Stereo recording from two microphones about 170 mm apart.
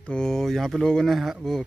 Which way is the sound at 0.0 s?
5° left (ahead or behind).